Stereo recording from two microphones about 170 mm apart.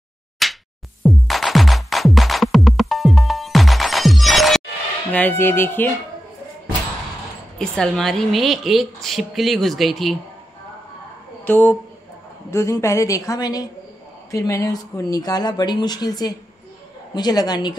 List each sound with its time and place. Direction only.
0.4 s a sound: centre (ahead or behind)
1.0 s music: centre (ahead or behind)
5.1 s speech: 10° left (ahead or behind)
7.5 s a woman's voice: 5° left (ahead or behind)
11.4 s speech: 10° left (ahead or behind)